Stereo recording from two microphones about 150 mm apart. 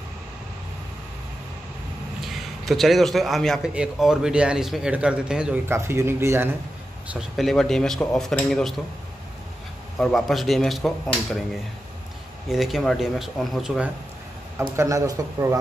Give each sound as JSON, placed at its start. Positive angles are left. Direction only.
{"t": 2.2, "sound": "a man's voice", "side_deg": 0}
{"t": 7.1, "sound": "a man's voice", "side_deg": 0}
{"t": 9.9, "sound": "a man's voice", "side_deg": 0}
{"t": 12.4, "sound": "a man's voice", "side_deg": 0}
{"t": 14.8, "sound": "a man's voice", "side_deg": -20}